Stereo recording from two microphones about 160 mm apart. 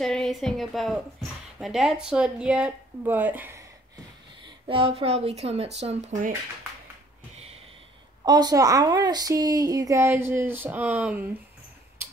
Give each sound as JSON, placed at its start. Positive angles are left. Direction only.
{"t": 0.0, "sound": "speech", "side_deg": 5}
{"t": 4.6, "sound": "speech", "side_deg": -35}
{"t": 8.3, "sound": "a woman's voice", "side_deg": -25}